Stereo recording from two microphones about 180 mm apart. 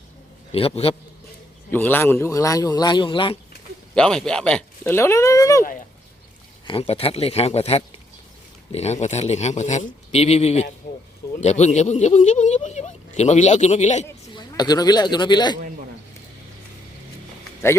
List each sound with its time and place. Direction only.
0.5 s speech: 30° left (ahead or behind)
1.7 s a man's voice: 10° left (ahead or behind); by 3.3 s 25° left (ahead or behind)
3.9 s speech: 5° left (ahead or behind)
6.7 s speech: 30° left (ahead or behind)
14.3 s speech: 20° left (ahead or behind)